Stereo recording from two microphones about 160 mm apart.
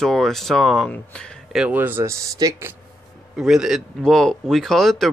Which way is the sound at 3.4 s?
5° right (ahead or behind).